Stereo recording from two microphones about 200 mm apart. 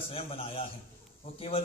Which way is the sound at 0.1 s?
30° left (ahead or behind).